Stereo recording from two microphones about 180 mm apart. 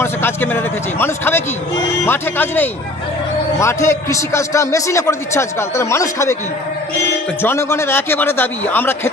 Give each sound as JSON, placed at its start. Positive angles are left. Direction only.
{"t": 0.0, "sound": "a man's voice", "side_deg": 15}
{"t": 7.4, "sound": "a man's voice", "side_deg": 15}